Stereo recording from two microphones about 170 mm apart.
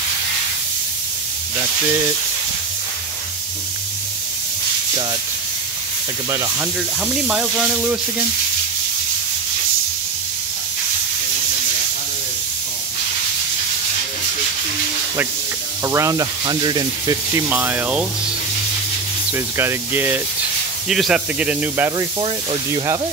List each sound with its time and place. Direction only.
6.3 s speech: 15° right (ahead or behind)
15.8 s speech: 20° right (ahead or behind)
17.5 s speech: 10° right (ahead or behind)
19.3 s speech: 15° right (ahead or behind)
21.9 s speech: 25° right (ahead or behind)